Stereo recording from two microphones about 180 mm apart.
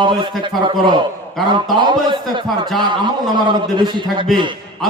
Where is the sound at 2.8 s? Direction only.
25° right (ahead or behind).